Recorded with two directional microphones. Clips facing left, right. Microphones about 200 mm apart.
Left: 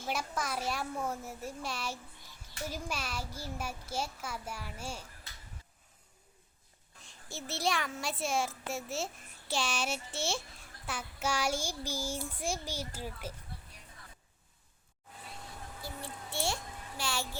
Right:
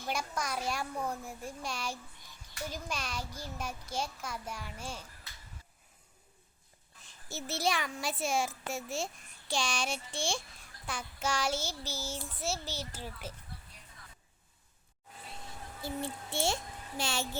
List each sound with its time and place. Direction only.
0.0 s a child's voice: 5° left (ahead or behind)
2.6 s child singing: 5° left (ahead or behind)
7.0 s a child's voice: centre (ahead or behind)
10.8 s child singing: 5° left (ahead or behind)
15.8 s a child's voice: 25° right (ahead or behind)